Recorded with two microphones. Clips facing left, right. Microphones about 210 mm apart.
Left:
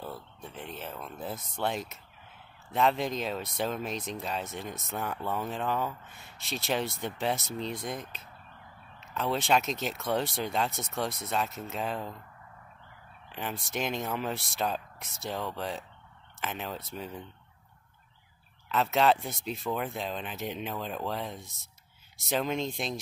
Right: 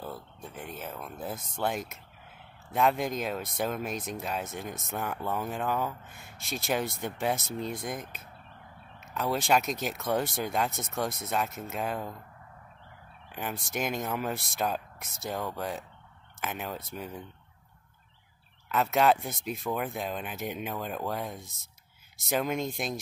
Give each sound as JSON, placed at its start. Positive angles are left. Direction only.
{"t": 0.1, "sound": "speech", "side_deg": 0}
{"t": 3.9, "sound": "speech", "side_deg": -50}
{"t": 4.2, "sound": "speech", "side_deg": 0}
{"t": 6.0, "sound": "speech", "side_deg": -50}
{"t": 6.6, "sound": "speech", "side_deg": 0}
{"t": 9.1, "sound": "speech", "side_deg": -5}
{"t": 9.9, "sound": "speech", "side_deg": 0}
{"t": 13.3, "sound": "speech", "side_deg": -5}
{"t": 18.7, "sound": "speech", "side_deg": -5}
{"t": 19.5, "sound": "speech", "side_deg": -15}